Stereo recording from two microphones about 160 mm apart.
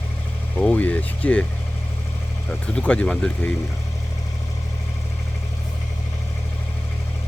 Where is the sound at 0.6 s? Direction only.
10° left (ahead or behind).